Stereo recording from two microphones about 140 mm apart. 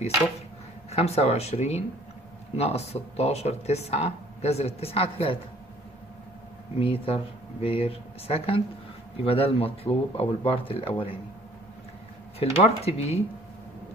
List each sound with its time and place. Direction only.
0.9 s speech: 50° left (ahead or behind)
6.8 s speech: 40° left (ahead or behind)
12.4 s speech: 50° left (ahead or behind)